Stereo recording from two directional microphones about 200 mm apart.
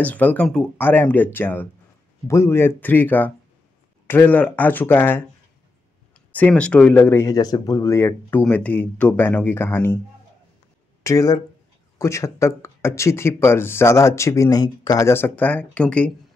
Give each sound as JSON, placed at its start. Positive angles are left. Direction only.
{"t": 0.0, "sound": "speech", "side_deg": 10}
{"t": 11.1, "sound": "speech", "side_deg": 20}